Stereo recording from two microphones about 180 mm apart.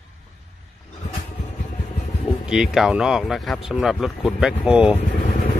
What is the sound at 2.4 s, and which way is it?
Speech, 5° right (ahead or behind).